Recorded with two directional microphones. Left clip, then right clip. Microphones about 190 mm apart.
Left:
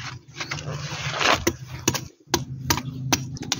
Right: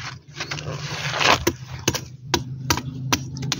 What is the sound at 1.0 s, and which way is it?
Vehicle, 60° right (ahead or behind).